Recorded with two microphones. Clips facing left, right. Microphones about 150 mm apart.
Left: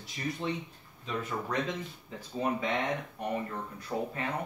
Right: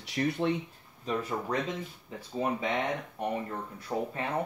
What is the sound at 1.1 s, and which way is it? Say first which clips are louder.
Speech: right 3 dB; 35° right (ahead or behind).